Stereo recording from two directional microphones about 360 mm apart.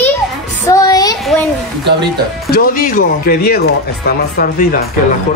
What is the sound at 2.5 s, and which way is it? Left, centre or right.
Speech, left.